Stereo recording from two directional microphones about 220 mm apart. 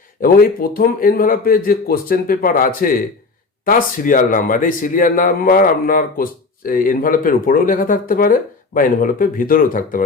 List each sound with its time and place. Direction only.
0.2 s speech: 40° left (ahead or behind)